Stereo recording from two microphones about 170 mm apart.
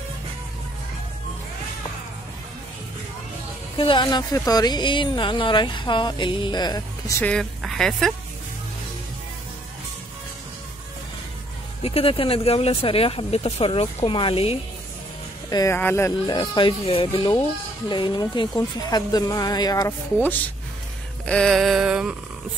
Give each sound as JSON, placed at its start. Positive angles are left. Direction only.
{"t": 3.7, "sound": "speech", "side_deg": 30}
{"t": 7.2, "sound": "speech", "side_deg": 5}
{"t": 11.8, "sound": "speech", "side_deg": 35}
{"t": 15.5, "sound": "speech", "side_deg": 15}
{"t": 16.3, "sound": "speech", "side_deg": 30}
{"t": 21.3, "sound": "a sound", "side_deg": 5}